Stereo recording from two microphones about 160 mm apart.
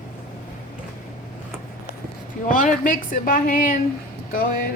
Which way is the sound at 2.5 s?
55° left (ahead or behind).